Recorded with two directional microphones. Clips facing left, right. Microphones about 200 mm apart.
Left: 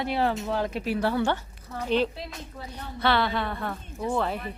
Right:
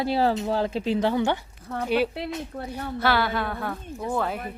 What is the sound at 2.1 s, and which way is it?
Speech, 60° right (ahead or behind).